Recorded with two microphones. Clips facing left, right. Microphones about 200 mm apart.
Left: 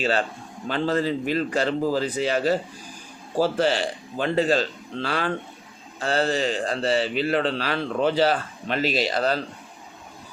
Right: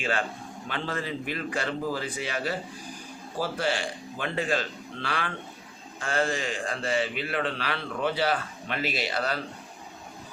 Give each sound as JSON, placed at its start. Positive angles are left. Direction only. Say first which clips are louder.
{"t": 0.0, "sound": "a man's voice", "louder": "left 5 dB", "side_deg": 35}
{"t": 4.2, "sound": "a man's voice", "louder": "left 7 dB", "side_deg": 35}